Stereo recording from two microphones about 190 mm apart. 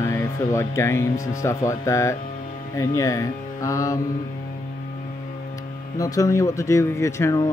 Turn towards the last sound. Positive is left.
turn(degrees=15)  # may be behind; listen again after turning